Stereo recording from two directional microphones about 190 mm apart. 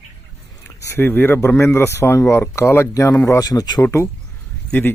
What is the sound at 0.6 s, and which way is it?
A man's voice, 15° left (ahead or behind).